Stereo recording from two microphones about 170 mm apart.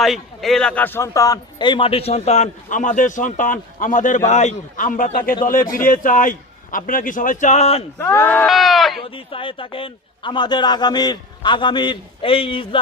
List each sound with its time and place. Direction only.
0.0 s a man's voice: centre (ahead or behind); by 7.9 s 35° left (ahead or behind)
7.9 s speech: 15° left (ahead or behind)
8.4 s speech: centre (ahead or behind)
9.0 s a man's voice: 30° left (ahead or behind)